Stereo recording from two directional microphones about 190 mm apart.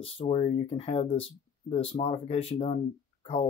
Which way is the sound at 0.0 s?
30° left (ahead or behind).